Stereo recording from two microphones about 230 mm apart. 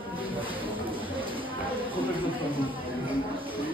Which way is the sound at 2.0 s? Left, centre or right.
Centre.